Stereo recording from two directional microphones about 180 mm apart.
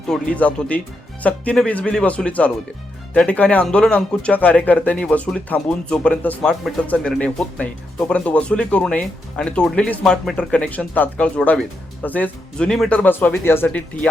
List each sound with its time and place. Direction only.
0.1 s speech: 5° left (ahead or behind)